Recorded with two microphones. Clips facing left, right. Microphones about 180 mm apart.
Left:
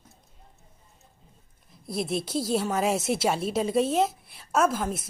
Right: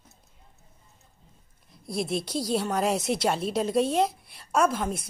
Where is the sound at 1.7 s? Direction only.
Centre (ahead or behind).